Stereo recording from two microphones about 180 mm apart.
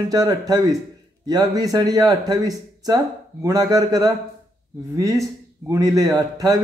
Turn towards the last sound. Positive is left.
turn(degrees=-20)  # may be behind; listen again after turning